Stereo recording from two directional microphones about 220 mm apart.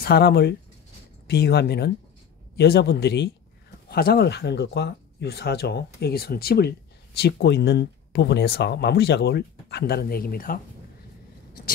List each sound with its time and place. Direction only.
0.0 s speech: 45° left (ahead or behind)